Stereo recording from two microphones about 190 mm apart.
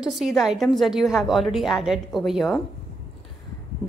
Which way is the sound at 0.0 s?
Centre (ahead or behind).